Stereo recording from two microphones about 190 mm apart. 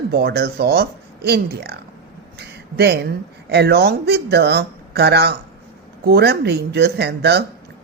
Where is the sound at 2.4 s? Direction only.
60° right (ahead or behind).